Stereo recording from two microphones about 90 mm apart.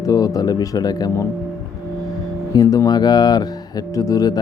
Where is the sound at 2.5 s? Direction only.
40° left (ahead or behind).